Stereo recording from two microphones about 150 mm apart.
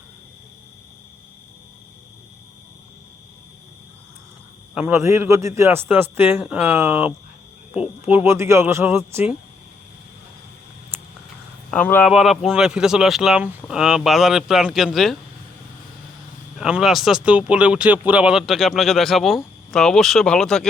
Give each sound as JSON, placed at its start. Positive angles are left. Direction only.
{"t": 4.7, "sound": "a man's voice", "side_deg": -5}
{"t": 4.9, "sound": "a man's voice", "side_deg": -20}
{"t": 8.1, "sound": "a man's voice", "side_deg": -15}
{"t": 11.7, "sound": "speech", "side_deg": 10}
{"t": 12.0, "sound": "speech", "side_deg": 0}
{"t": 16.6, "sound": "speech", "side_deg": -5}